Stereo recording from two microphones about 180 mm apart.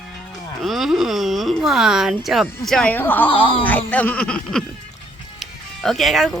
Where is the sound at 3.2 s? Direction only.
30° left (ahead or behind).